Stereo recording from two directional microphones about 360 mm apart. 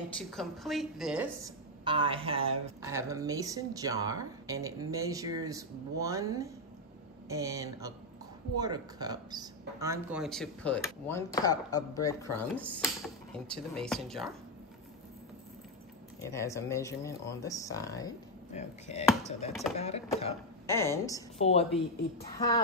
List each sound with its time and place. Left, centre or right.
0.3 s a woman's voice: centre
16.2 s speech: centre